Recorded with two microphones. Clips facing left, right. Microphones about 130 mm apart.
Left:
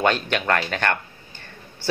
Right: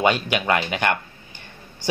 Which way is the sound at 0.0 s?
10° right (ahead or behind).